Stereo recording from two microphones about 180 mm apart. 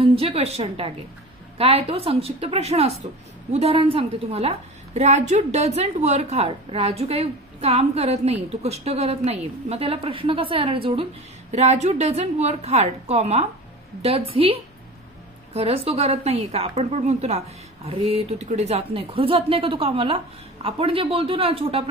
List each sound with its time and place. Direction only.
0.0 s a woman's voice: 30° right (ahead or behind)